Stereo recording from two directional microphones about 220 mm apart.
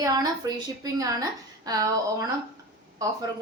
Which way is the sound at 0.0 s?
15° right (ahead or behind).